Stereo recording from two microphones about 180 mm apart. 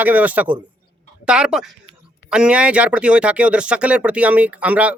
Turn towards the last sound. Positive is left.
turn(degrees=-10)  # may be behind; listen again after turning